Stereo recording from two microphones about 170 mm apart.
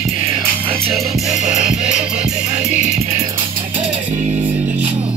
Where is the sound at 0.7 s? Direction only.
35° right (ahead or behind).